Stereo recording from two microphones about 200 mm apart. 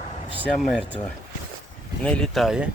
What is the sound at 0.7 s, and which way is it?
Speech, 5° right (ahead or behind).